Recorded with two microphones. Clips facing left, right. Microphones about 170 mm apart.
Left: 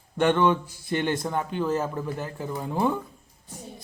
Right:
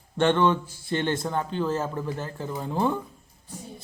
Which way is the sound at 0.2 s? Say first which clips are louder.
Even; 10° left (ahead or behind).